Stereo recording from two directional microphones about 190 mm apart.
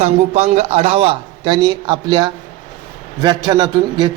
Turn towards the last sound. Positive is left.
turn(degrees=-20)  # may be behind; listen again after turning